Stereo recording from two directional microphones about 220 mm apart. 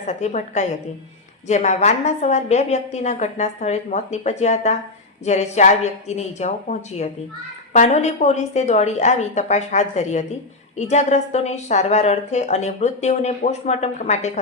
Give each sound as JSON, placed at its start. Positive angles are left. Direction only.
{"t": 0.1, "sound": "a woman's voice", "side_deg": 30}